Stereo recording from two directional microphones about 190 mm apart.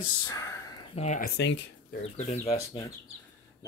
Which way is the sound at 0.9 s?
40° left (ahead or behind).